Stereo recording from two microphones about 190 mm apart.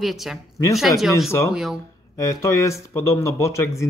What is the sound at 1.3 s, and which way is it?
Speech, 15° left (ahead or behind).